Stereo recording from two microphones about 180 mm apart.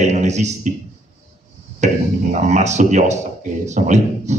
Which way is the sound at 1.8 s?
40° right (ahead or behind).